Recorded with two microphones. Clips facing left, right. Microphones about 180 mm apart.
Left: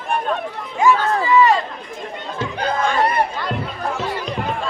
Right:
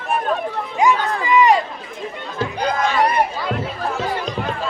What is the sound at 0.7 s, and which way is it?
Speech, 20° right (ahead or behind).